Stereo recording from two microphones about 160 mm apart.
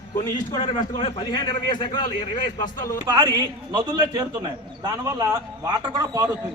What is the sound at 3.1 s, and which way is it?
A man's voice, 25° right (ahead or behind).